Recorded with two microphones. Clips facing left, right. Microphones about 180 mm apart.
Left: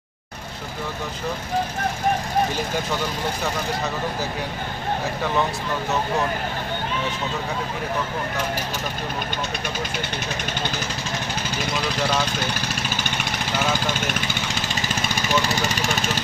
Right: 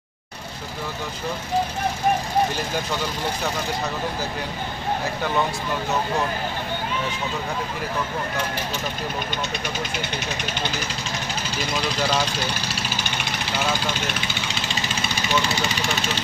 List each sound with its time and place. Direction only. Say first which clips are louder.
13.7 s speech: left 2 dB; 45° left (ahead or behind)